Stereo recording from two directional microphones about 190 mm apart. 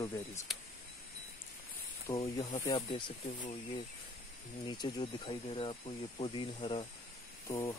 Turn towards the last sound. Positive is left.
turn(degrees=15)  # may be behind; listen again after turning